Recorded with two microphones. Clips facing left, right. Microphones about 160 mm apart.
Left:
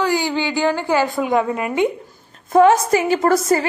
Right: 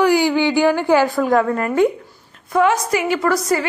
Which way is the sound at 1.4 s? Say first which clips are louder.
Right 3 dB; 10° left (ahead or behind).